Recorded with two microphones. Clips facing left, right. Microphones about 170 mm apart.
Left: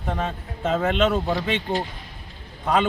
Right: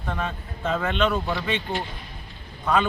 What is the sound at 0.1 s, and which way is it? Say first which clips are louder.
A man's voice: left 2 dB; 30° left (ahead or behind).